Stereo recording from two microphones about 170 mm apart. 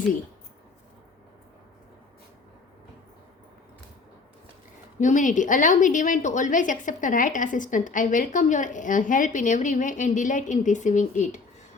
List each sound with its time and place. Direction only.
4.9 s a woman's voice: 45° left (ahead or behind)